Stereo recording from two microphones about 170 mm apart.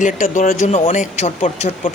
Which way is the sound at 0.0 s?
50° left (ahead or behind).